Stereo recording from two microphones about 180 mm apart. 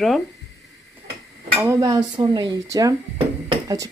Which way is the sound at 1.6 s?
20° right (ahead or behind).